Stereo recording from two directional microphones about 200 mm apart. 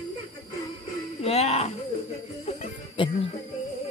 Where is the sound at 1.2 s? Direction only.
30° left (ahead or behind).